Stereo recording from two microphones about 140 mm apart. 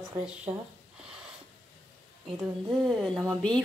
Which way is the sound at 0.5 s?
30° right (ahead or behind).